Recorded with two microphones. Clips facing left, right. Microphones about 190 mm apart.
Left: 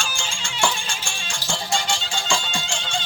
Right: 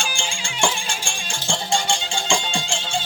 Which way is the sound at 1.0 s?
30° right (ahead or behind).